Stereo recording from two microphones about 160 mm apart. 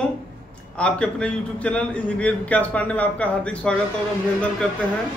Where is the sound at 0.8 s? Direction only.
5° left (ahead or behind).